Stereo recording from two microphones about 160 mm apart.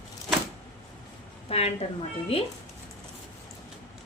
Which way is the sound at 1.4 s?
40° left (ahead or behind).